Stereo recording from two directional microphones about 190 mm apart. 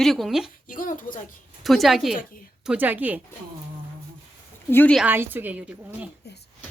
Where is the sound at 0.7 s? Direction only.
45° left (ahead or behind).